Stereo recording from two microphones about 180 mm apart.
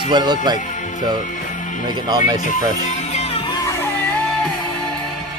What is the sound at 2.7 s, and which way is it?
Music, 40° left (ahead or behind).